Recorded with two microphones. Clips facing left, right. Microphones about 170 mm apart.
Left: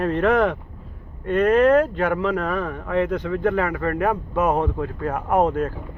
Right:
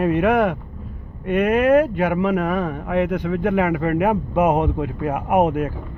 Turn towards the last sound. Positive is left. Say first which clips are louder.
# right 2 dB
turn(degrees=-15)  # may be behind; listen again after turning